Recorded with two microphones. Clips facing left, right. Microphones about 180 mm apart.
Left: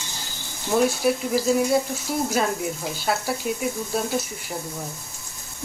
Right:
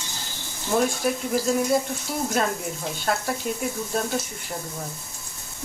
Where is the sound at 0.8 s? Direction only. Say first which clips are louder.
Left 3 dB; 5° left (ahead or behind).